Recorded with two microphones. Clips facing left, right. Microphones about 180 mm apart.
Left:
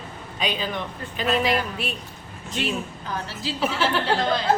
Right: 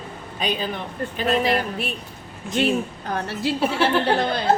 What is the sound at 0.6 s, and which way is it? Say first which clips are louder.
A woman's voice: right 2 dB; 45° right (ahead or behind).